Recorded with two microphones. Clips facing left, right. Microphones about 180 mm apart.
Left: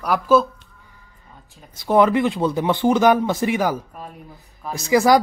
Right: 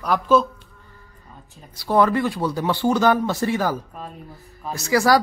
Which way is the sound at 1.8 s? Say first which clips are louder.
Left 2 dB; 20° left (ahead or behind).